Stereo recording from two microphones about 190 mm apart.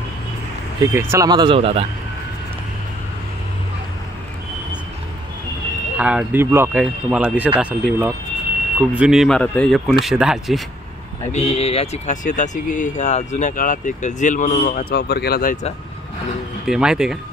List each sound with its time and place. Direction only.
0.9 s speech: 15° right (ahead or behind)
5.9 s speech: 5° right (ahead or behind)
11.3 s speech: 35° left (ahead or behind); by 15.5 s 55° left (ahead or behind)
16.6 s speech: 5° right (ahead or behind)